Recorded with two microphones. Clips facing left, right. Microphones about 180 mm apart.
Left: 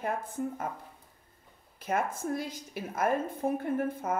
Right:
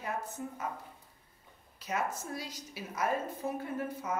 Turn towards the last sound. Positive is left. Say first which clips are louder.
# left 6 dB
turn(degrees=50)  # may be behind; listen again after turning